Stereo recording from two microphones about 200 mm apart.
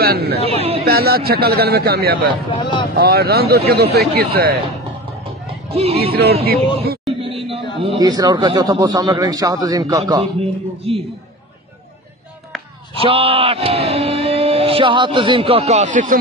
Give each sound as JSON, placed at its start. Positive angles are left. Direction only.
{"t": 0.0, "sound": "speech", "side_deg": -50}
{"t": 0.5, "sound": "chatter", "side_deg": -30}
{"t": 0.8, "sound": "speech", "side_deg": -50}
{"t": 2.6, "sound": "speech", "side_deg": 25}
{"t": 3.0, "sound": "speech", "side_deg": -50}
{"t": 5.7, "sound": "speech", "side_deg": -30}
{"t": 6.4, "sound": "speech", "side_deg": -50}
{"t": 7.2, "sound": "chatter", "side_deg": -25}
{"t": 8.0, "sound": "speech", "side_deg": -20}
{"t": 10.9, "sound": "speech", "side_deg": -30}
{"t": 12.5, "sound": "a sound", "side_deg": 0}
{"t": 13.0, "sound": "speech", "side_deg": -30}